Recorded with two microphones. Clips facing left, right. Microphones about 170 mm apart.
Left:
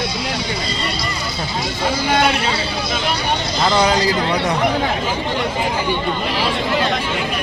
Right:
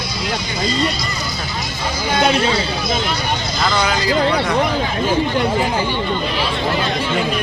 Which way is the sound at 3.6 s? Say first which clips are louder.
Left 4 dB; 30° left (ahead or behind).